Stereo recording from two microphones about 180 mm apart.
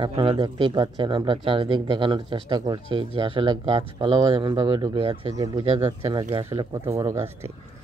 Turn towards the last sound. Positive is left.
turn(degrees=-15)  # may be behind; listen again after turning